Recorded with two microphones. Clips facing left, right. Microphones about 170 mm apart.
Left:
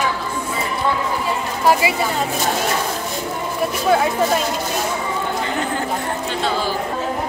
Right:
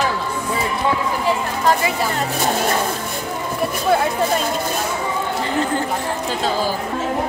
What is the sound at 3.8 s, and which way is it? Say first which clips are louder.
Speech: left 1 dB; centre (ahead or behind).